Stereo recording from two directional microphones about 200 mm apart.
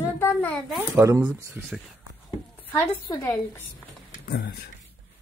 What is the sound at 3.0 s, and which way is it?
Speech, 20° left (ahead or behind).